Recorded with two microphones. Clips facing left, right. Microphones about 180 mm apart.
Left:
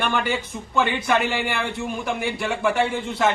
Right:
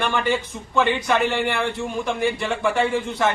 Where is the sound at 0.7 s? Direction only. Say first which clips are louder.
Right 1 dB; 5° left (ahead or behind).